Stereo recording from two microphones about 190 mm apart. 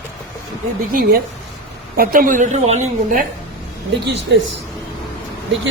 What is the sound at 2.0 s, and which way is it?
A woman's voice, 50° right (ahead or behind).